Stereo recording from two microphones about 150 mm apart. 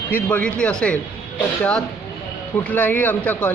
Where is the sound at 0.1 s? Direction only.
10° left (ahead or behind).